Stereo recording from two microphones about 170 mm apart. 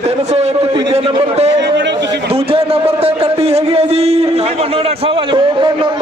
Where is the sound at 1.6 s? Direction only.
90° right.